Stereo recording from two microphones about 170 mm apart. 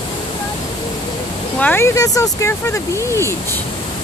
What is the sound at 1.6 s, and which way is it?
Speech, 10° left (ahead or behind).